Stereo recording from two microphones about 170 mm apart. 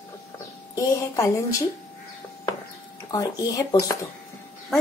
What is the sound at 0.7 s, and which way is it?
Speech, 20° left (ahead or behind).